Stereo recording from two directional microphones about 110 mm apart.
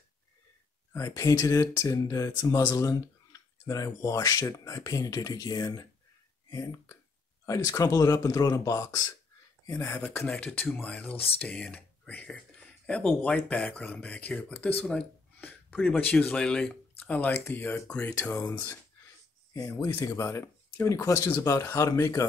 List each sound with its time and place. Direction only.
0.9 s speech: 30° left (ahead or behind)
10.0 s speech: 10° left (ahead or behind)
12.8 s speech: 10° left (ahead or behind)
19.5 s speech: 35° left (ahead or behind)